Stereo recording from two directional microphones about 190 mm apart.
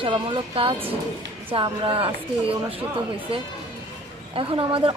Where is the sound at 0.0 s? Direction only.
30° right (ahead or behind).